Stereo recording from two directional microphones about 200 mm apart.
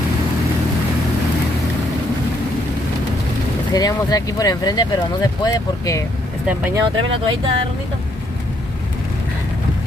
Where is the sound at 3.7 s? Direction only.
20° left (ahead or behind).